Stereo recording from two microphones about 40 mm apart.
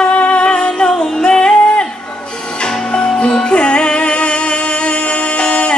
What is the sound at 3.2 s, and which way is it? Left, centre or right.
Music, left.